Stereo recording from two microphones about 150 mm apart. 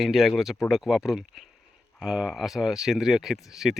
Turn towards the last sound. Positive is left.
turn(degrees=0)  # may be behind; listen again after turning